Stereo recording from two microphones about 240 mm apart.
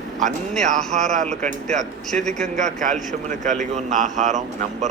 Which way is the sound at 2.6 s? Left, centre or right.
Right.